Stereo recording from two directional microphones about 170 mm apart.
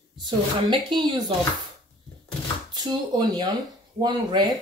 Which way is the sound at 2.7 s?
25° right (ahead or behind).